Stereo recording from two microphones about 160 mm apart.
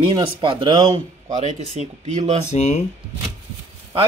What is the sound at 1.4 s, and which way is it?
Speech, 45° right (ahead or behind).